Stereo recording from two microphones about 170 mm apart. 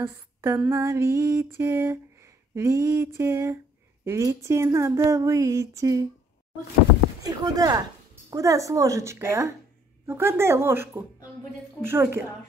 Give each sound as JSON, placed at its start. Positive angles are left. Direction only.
{"t": 0.0, "sound": "female singing", "side_deg": -15}
{"t": 7.2, "sound": "a woman's voice", "side_deg": -20}
{"t": 10.0, "sound": "female singing", "side_deg": -15}